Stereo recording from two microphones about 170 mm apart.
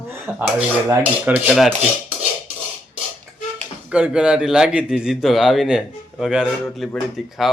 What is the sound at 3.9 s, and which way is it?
A man's voice, 5° right (ahead or behind).